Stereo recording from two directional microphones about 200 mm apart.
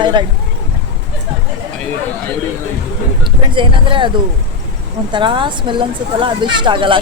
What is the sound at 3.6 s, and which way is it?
Speech, 25° right (ahead or behind).